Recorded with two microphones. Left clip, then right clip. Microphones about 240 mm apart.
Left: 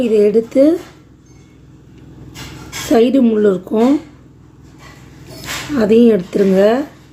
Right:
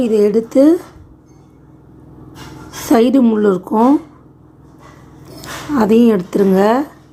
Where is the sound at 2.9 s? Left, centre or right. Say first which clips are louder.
Even; centre.